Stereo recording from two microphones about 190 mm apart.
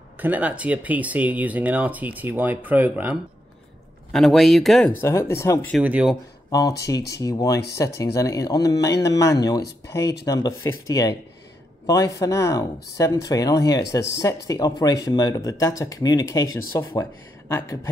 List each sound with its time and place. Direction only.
0.2 s speech: 10° right (ahead or behind)
5.0 s speech: 15° left (ahead or behind)
5.7 s speech: 5° right (ahead or behind)
6.5 s speech: 20° left (ahead or behind)
16.4 s speech: 90° left
16.7 s speech: 15° left (ahead or behind)